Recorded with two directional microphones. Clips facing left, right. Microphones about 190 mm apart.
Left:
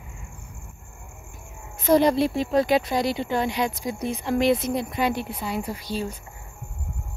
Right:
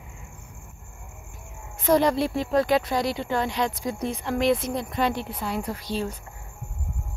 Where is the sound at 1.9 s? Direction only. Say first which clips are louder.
Left 2 dB; 15° left (ahead or behind).